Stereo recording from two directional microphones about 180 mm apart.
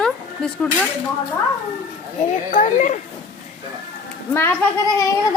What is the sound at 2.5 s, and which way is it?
Speech, 45° left (ahead or behind).